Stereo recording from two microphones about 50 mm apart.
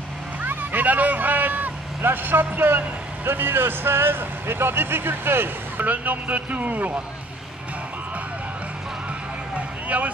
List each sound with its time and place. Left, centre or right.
0.4 s vehicle: right
2.0 s speech: right
5.9 s speech: right
9.8 s speech: right